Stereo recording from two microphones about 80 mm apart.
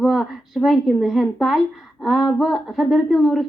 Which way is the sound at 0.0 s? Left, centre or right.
Centre.